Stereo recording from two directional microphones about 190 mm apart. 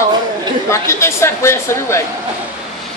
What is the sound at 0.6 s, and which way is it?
Speech, 15° left (ahead or behind).